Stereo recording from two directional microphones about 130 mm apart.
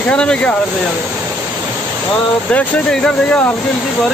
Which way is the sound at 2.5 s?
5° left (ahead or behind).